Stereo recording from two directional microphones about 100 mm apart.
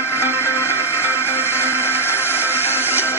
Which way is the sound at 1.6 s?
25° left (ahead or behind).